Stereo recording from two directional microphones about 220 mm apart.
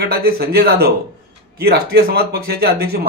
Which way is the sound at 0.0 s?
45° right (ahead or behind).